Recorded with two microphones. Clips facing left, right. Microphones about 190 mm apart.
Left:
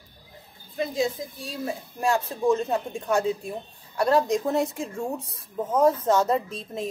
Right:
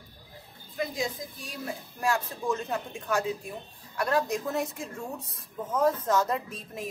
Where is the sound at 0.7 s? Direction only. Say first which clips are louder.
Left 6 dB; 25° left (ahead or behind).